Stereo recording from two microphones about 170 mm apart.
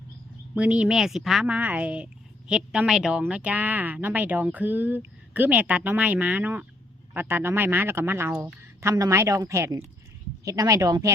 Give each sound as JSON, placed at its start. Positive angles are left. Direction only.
{"t": 0.5, "sound": "speech", "side_deg": -5}